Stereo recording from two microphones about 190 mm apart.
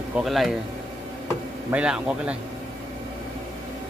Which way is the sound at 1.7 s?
5° right (ahead or behind).